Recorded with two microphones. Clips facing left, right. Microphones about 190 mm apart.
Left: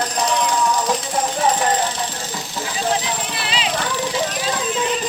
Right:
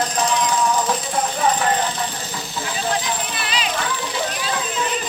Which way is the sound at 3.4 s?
25° left (ahead or behind).